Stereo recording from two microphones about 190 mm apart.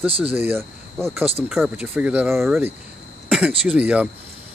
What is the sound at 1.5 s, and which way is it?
Speech, 5° right (ahead or behind).